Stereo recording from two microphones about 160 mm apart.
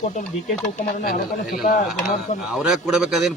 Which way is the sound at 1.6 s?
45° left (ahead or behind).